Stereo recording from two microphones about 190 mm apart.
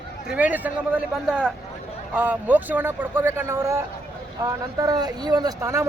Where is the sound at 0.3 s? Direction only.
10° right (ahead or behind).